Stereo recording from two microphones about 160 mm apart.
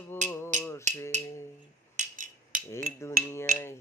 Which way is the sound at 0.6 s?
15° left (ahead or behind).